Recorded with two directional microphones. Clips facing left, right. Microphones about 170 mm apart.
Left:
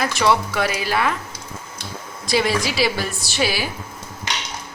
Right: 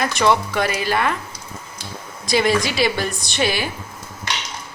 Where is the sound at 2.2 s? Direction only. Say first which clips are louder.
Right 2 dB; centre (ahead or behind).